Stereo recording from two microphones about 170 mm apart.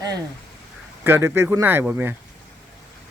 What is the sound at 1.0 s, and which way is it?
Speech, 15° right (ahead or behind).